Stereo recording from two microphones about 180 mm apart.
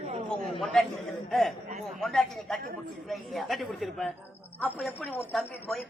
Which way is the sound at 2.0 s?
Centre (ahead or behind).